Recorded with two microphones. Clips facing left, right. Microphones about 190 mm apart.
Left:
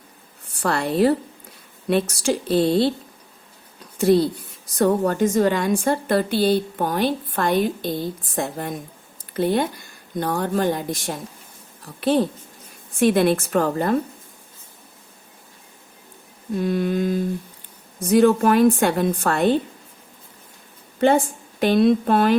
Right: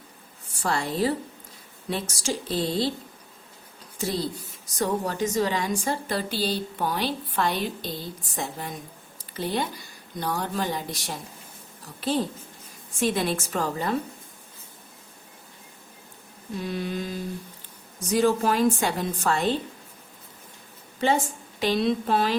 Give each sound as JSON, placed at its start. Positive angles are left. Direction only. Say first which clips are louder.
{"t": 0.6, "sound": "a woman's voice", "louder": "left 6 dB", "side_deg": 60}
{"t": 3.9, "sound": "a woman's voice", "louder": "left 12 dB", "side_deg": 60}
{"t": 16.6, "sound": "a woman's voice", "louder": "left 8 dB", "side_deg": 50}
{"t": 21.0, "sound": "a woman's voice", "louder": "left 7 dB", "side_deg": 55}